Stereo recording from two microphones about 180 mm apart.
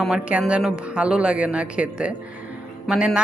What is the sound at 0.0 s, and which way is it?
A woman's voice, 5° right (ahead or behind).